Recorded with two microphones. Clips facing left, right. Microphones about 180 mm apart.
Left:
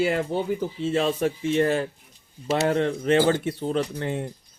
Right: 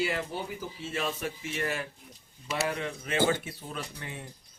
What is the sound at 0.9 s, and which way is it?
Speech, 30° left (ahead or behind).